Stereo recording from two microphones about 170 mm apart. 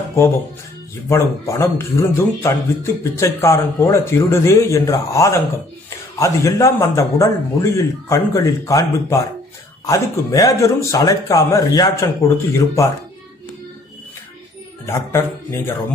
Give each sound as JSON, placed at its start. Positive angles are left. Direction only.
{"t": 1.0, "sound": "speech", "side_deg": 15}
{"t": 9.8, "sound": "speech", "side_deg": 20}
{"t": 14.9, "sound": "speech", "side_deg": 15}